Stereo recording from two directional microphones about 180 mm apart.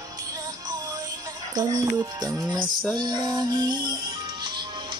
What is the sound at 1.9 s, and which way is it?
Music, 20° right (ahead or behind).